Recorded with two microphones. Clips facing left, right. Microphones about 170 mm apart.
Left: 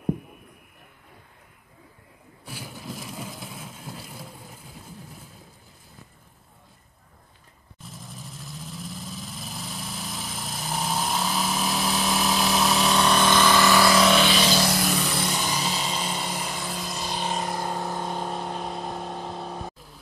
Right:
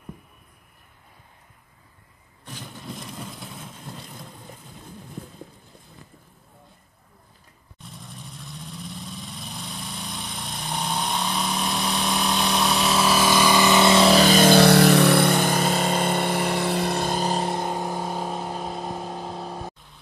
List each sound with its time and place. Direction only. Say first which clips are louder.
2.4 s vehicle: even; 5° left (ahead or behind)
7.8 s vehicle: even; centre (ahead or behind); by 17.3 s 50° right (ahead or behind)
17.3 s vehicle: right 3 dB; 30° right (ahead or behind)
17.9 s vehicle: right 1 dB; 5° right (ahead or behind)